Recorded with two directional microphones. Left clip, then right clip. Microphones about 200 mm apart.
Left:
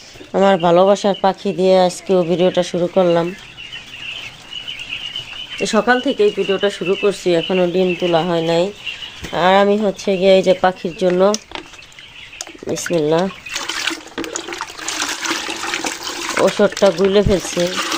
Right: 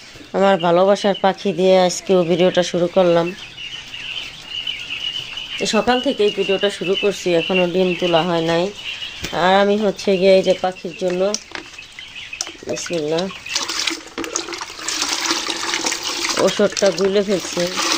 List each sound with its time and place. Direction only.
0.3 s speech: 15° left (ahead or behind)
5.5 s speech: 15° left (ahead or behind)
10.4 s speech: 25° left (ahead or behind)
12.6 s speech: 25° left (ahead or behind)
13.5 s water: centre (ahead or behind)
15.2 s water: 10° left (ahead or behind)
17.1 s speech: 15° left (ahead or behind)